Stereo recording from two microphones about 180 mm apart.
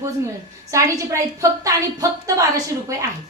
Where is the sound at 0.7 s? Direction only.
15° right (ahead or behind).